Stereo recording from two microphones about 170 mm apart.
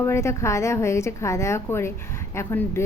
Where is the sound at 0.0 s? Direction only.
15° left (ahead or behind).